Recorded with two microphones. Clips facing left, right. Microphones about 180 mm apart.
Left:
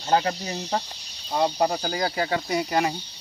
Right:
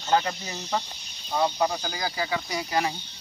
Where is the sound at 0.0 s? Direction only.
35° left (ahead or behind).